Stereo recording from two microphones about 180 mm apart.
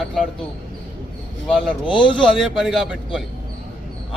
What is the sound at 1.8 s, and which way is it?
Speech, 25° left (ahead or behind).